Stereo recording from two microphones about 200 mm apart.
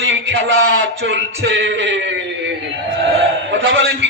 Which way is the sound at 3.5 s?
70° right (ahead or behind).